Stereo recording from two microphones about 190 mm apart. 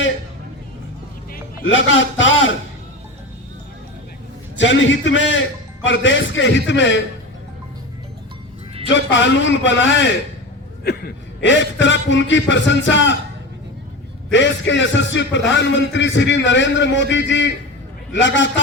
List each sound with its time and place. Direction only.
1.6 s a man's voice: 80° left
4.5 s a man's voice: 75° left (ahead or behind)
8.9 s a man's voice: 75° left (ahead or behind)
14.3 s a man's voice: 70° left (ahead or behind)